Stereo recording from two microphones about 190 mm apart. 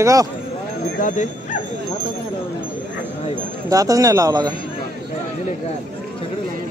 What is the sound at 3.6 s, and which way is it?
Speech, 20° right (ahead or behind).